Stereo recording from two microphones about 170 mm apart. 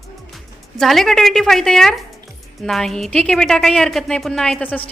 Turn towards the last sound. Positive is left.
turn(degrees=10)  # may be behind; listen again after turning